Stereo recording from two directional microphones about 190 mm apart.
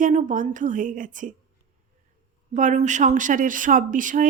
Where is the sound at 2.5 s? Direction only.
40° right (ahead or behind).